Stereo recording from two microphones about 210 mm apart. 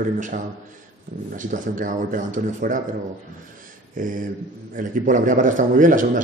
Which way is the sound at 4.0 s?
40° right (ahead or behind).